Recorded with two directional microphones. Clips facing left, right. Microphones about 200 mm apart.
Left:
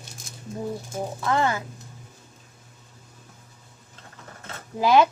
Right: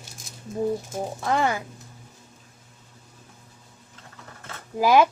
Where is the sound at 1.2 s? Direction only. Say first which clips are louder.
Even; 20° right (ahead or behind).